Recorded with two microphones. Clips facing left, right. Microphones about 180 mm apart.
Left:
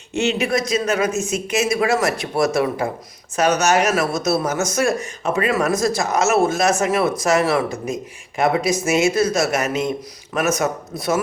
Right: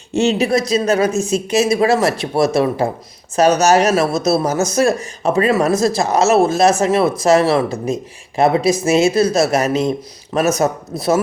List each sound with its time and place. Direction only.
0.1 s speech: 35° right (ahead or behind)